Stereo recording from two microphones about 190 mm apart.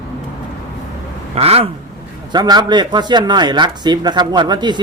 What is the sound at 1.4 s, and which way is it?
Speech, 30° right (ahead or behind).